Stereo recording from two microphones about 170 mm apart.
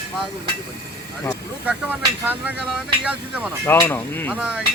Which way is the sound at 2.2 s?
10° right (ahead or behind).